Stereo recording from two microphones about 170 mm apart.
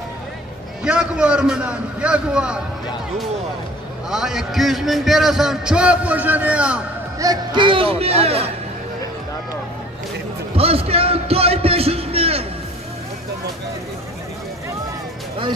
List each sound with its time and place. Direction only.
0.8 s a man's voice: 5° right (ahead or behind)
4.1 s a man's voice: 5° right (ahead or behind)
7.2 s speech: 25° right (ahead or behind)
10.5 s a sound: 35° right (ahead or behind)